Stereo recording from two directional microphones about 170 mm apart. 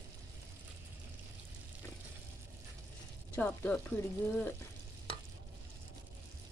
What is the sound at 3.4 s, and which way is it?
Speech, 10° left (ahead or behind).